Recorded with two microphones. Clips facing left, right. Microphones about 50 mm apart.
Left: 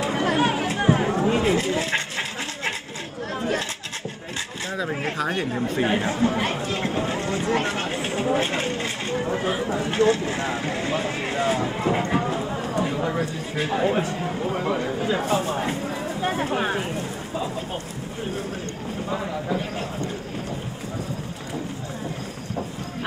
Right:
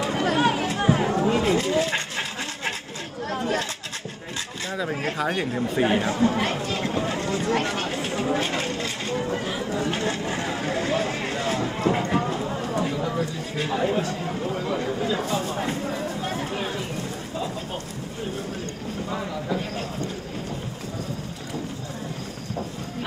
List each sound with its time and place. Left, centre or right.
0.2 s chatter: left
1.0 s a sound: left
5.5 s speech: centre
6.1 s speech: left; by 12.0 s centre
12.1 s a sound: centre
12.9 s a sound: left
13.6 s speech: centre
14.2 s speech: centre
14.5 s speech: left
16.2 s a sound: left
16.5 s speech: left
19.0 s speech: centre